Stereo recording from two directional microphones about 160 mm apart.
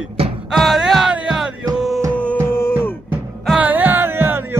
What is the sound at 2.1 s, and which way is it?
Music, 10° left (ahead or behind).